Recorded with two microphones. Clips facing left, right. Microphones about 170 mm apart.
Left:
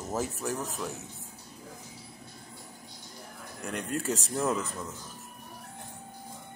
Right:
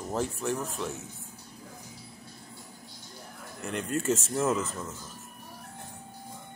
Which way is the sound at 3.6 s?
Centre (ahead or behind).